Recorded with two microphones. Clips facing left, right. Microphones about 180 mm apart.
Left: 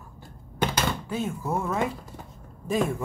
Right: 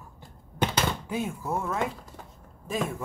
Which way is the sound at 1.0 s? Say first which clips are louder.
Left 1 dB; 15° right (ahead or behind).